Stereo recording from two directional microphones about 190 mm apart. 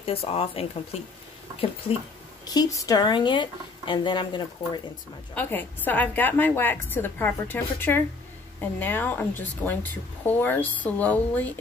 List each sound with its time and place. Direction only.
0.0 s speech: 30° left (ahead or behind)
2.4 s speech: 20° left (ahead or behind)
5.3 s a woman's voice: 10° left (ahead or behind)